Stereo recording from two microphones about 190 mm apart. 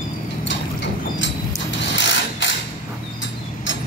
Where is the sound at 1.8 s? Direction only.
70° left (ahead or behind).